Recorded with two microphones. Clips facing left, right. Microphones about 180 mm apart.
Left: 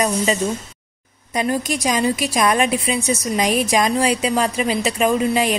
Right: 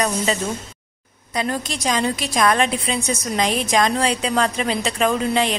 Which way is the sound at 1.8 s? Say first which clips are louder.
Right 1 dB; 5° left (ahead or behind).